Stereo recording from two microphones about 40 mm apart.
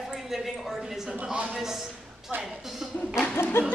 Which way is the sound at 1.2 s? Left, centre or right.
Right.